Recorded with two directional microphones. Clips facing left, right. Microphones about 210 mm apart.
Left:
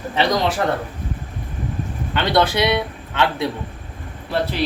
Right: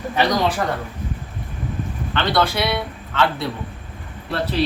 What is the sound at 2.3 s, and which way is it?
Speech, 20° left (ahead or behind).